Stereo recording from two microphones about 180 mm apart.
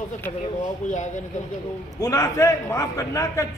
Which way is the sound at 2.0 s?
20° left (ahead or behind).